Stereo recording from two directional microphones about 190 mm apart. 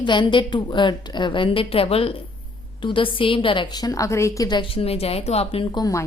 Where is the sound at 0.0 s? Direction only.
25° left (ahead or behind).